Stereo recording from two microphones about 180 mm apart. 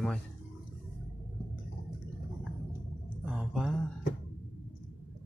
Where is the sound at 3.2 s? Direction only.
5° right (ahead or behind).